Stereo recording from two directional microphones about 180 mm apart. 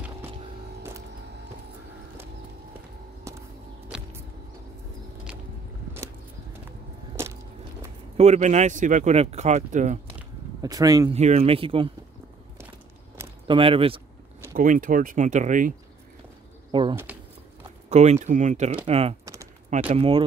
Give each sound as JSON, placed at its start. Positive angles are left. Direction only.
{"t": 3.9, "sound": "a sound", "side_deg": -5}
{"t": 8.2, "sound": "speech", "side_deg": -40}
{"t": 10.6, "sound": "speech", "side_deg": -20}
{"t": 11.1, "sound": "speech", "side_deg": -35}
{"t": 13.5, "sound": "speech", "side_deg": -30}
{"t": 14.5, "sound": "speech", "side_deg": -50}
{"t": 16.9, "sound": "speech", "side_deg": -10}
{"t": 17.8, "sound": "speech", "side_deg": -35}